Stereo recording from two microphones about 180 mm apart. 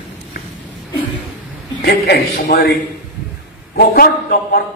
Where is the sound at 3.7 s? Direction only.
60° left (ahead or behind).